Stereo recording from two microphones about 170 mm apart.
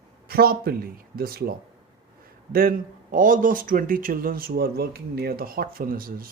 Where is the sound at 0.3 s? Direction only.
60° right (ahead or behind).